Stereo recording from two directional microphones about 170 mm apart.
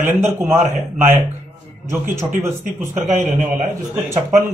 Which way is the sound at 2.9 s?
45° right (ahead or behind).